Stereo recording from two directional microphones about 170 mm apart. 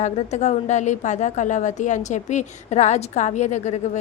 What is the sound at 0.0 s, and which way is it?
A woman's voice, 40° left (ahead or behind).